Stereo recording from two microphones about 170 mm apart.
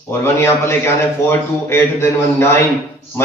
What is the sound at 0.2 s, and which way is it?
A man's voice, 15° left (ahead or behind).